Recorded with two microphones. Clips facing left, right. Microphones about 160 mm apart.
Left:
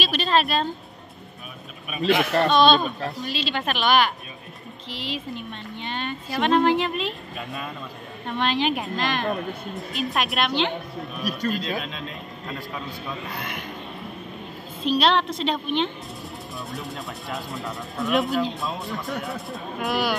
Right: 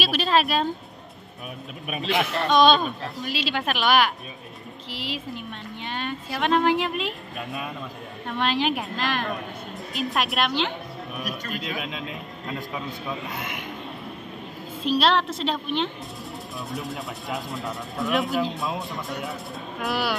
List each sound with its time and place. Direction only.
0.0 s a man's voice: 5° right (ahead or behind)
2.5 s a man's voice: 10° right (ahead or behind)
13.3 s speech: 20° right (ahead or behind)
14.8 s speech: 5° right (ahead or behind)